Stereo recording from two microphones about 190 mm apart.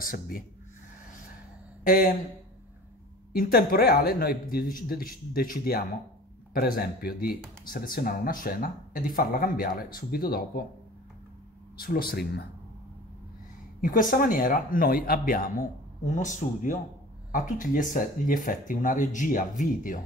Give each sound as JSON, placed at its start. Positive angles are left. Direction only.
{"t": 0.0, "sound": "speech", "side_deg": 50}
{"t": 1.9, "sound": "speech", "side_deg": 45}
{"t": 3.3, "sound": "speech", "side_deg": 50}
{"t": 11.8, "sound": "speech", "side_deg": 50}
{"t": 13.7, "sound": "speech", "side_deg": 45}